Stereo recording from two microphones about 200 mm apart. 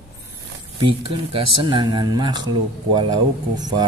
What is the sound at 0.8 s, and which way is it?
Speech, 25° right (ahead or behind).